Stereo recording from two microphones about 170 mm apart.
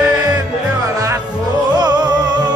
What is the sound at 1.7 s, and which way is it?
Music, 25° right (ahead or behind).